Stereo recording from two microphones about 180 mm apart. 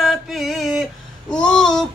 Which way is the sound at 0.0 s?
Centre (ahead or behind).